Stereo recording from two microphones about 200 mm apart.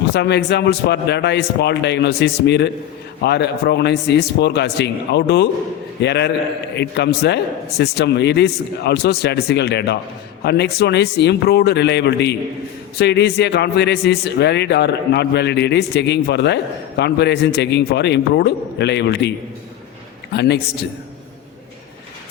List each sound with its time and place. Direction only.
0.1 s a man's voice: 55° left (ahead or behind)
20.3 s a man's voice: 55° left (ahead or behind)